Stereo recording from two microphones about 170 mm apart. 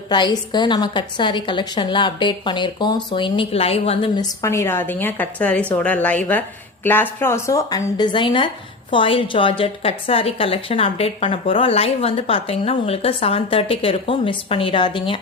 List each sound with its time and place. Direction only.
0.1 s a woman's voice: 25° left (ahead or behind)
4.2 s a woman's voice: 15° left (ahead or behind)